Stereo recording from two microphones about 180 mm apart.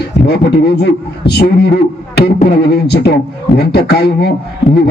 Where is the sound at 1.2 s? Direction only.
65° left (ahead or behind).